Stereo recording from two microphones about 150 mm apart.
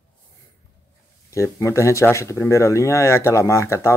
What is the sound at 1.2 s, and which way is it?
Speech, 20° left (ahead or behind).